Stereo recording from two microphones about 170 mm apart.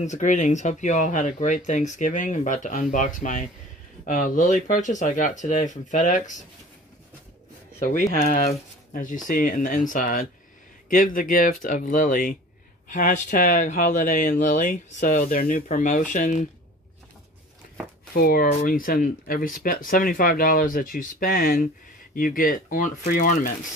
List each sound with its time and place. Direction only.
0.0 s speech: 45° left (ahead or behind)
7.8 s speech: 50° left (ahead or behind)
18.1 s speech: 60° left (ahead or behind)